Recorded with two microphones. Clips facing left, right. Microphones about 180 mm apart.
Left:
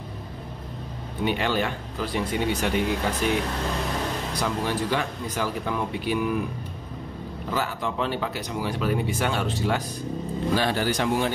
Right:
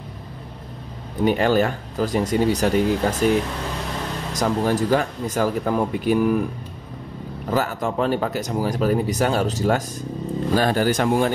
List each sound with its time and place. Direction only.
1.2 s speech: 45° right (ahead or behind)
7.5 s speech: 45° right (ahead or behind)